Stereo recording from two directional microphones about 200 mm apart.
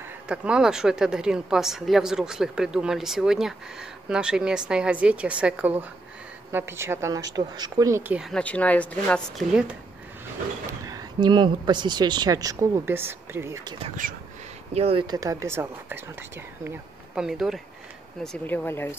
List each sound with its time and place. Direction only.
0.3 s a woman's voice: 5° right (ahead or behind)
8.2 s a woman's voice: 5° left (ahead or behind)
10.7 s speech: 20° right (ahead or behind)
13.8 s speech: 40° right (ahead or behind)
14.7 s speech: 30° right (ahead or behind); by 18.9 s 10° left (ahead or behind)